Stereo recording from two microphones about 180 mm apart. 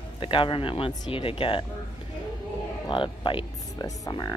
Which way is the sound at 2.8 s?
25° left (ahead or behind).